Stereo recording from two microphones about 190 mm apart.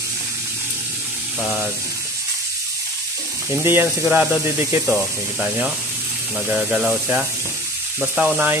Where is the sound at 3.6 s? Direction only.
10° right (ahead or behind).